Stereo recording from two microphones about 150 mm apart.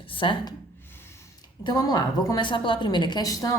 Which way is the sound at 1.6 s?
25° left (ahead or behind).